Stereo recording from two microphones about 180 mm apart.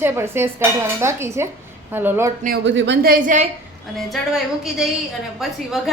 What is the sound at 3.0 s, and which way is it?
Speech, 45° right (ahead or behind).